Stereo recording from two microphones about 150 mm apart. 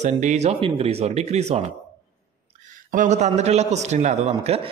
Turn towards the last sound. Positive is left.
turn(degrees=-45)  # may be behind; listen again after turning